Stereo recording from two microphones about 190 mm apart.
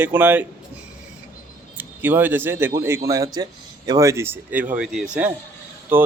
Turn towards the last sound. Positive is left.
turn(degrees=-10)  # may be behind; listen again after turning